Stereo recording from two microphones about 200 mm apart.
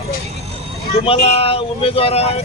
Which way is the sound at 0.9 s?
30° left (ahead or behind).